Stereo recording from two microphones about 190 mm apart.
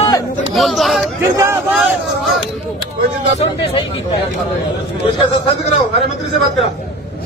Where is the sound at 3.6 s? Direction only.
30° left (ahead or behind).